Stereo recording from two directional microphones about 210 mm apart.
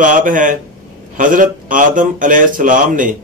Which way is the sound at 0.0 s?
40° right (ahead or behind).